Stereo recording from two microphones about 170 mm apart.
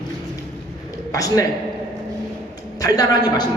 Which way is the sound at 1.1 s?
20° left (ahead or behind).